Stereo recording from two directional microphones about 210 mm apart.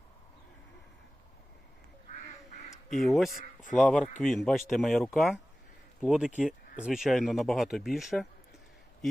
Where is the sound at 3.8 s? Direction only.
5° left (ahead or behind).